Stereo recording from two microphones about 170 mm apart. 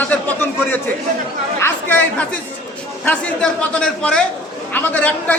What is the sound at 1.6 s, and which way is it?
Chatter, 10° left (ahead or behind).